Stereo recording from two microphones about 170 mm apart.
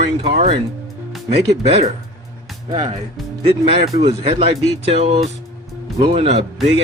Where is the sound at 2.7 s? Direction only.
30° right (ahead or behind).